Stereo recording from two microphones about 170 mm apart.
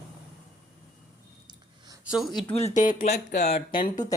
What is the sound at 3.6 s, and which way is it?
Speech, 60° left (ahead or behind).